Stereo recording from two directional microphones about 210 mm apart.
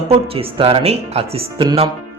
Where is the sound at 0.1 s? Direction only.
25° right (ahead or behind).